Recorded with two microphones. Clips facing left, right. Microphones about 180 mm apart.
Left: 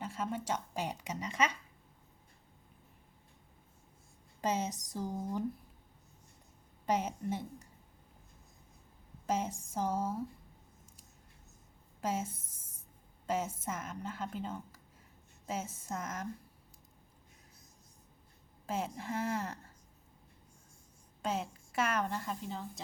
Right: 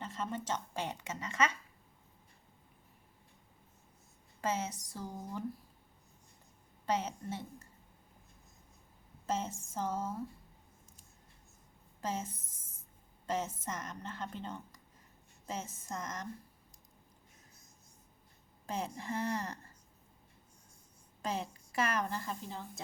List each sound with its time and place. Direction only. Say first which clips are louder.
0.0 s a woman's voice: left 2 dB; 10° left (ahead or behind)
4.4 s a woman's voice: left 2 dB; 15° left (ahead or behind)
6.8 s a woman's voice: left 2 dB; 15° left (ahead or behind)
9.2 s a woman's voice: left 2 dB; 10° left (ahead or behind)
11.9 s a woman's voice: left 3 dB; 5° left (ahead or behind)
18.6 s a woman's voice: left 2 dB; 5° left (ahead or behind)
21.2 s a woman's voice: left 2 dB; centre (ahead or behind)